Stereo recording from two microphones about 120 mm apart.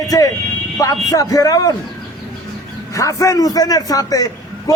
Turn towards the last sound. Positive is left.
turn(degrees=30)  # may be behind; listen again after turning